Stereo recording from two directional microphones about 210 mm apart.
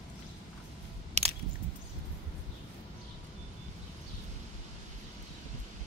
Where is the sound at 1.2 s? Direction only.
35° right (ahead or behind).